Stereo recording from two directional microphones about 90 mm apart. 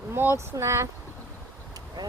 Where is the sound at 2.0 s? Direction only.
50° right (ahead or behind).